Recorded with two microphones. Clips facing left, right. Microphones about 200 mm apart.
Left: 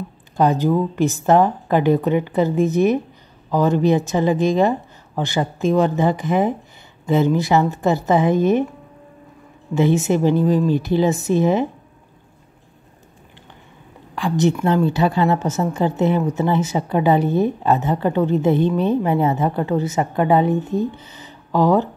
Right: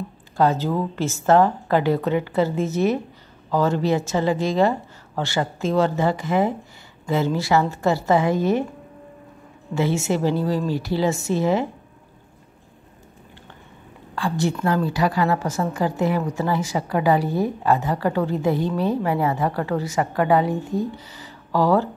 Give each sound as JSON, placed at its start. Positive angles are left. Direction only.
{"t": 0.4, "sound": "a woman's voice", "side_deg": 15}
{"t": 9.8, "sound": "a woman's voice", "side_deg": 20}
{"t": 14.1, "sound": "a woman's voice", "side_deg": 20}